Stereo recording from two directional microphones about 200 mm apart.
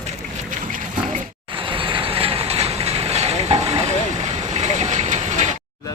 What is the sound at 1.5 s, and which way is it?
Vehicle, 25° right (ahead or behind).